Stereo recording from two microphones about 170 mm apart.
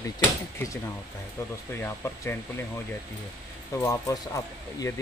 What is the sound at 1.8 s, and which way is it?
Speech, 15° left (ahead or behind).